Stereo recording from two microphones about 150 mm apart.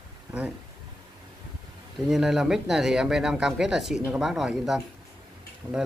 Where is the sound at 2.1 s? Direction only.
5° right (ahead or behind).